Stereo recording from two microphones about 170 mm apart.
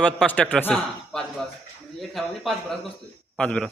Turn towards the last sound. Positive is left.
turn(degrees=5)  # may be behind; listen again after turning